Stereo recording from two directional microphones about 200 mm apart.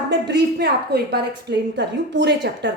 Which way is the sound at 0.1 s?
55° right (ahead or behind).